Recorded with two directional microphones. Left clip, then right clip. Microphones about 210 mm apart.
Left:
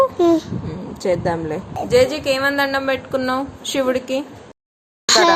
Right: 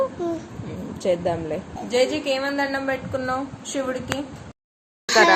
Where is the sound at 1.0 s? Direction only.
30° left (ahead or behind).